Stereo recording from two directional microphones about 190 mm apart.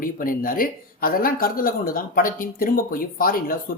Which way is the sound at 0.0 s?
50° left (ahead or behind).